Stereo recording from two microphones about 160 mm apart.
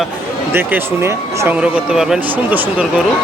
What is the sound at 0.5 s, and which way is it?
Speech, 15° right (ahead or behind).